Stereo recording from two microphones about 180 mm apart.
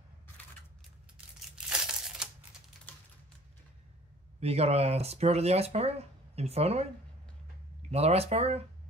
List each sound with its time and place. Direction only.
1.7 s crumpling: 5° right (ahead or behind)
4.4 s speech: 35° right (ahead or behind)
7.9 s speech: 35° right (ahead or behind)